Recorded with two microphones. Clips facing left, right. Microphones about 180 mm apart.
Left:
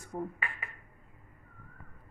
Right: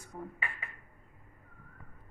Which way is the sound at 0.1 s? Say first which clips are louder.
Left 7 dB; 55° left (ahead or behind).